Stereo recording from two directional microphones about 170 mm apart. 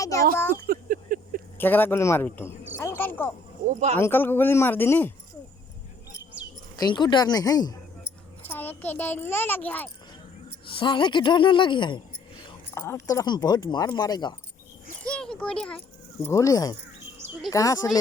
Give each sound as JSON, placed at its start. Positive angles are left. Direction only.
{"t": 0.0, "sound": "a sound", "side_deg": 20}
{"t": 0.5, "sound": "a sound", "side_deg": -55}
{"t": 1.5, "sound": "speech", "side_deg": 10}
{"t": 3.7, "sound": "speech", "side_deg": -40}
{"t": 3.9, "sound": "a child's voice", "side_deg": 10}
{"t": 6.7, "sound": "a woman's voice", "side_deg": 25}
{"t": 8.4, "sound": "a child's voice", "side_deg": 10}
{"t": 10.7, "sound": "a woman's voice", "side_deg": 30}
{"t": 12.7, "sound": "a woman's voice", "side_deg": 15}
{"t": 15.0, "sound": "a child's voice", "side_deg": 5}
{"t": 16.2, "sound": "a woman's voice", "side_deg": 20}